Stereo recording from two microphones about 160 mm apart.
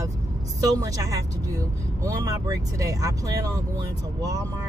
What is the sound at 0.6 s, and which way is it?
Speech, 20° right (ahead or behind).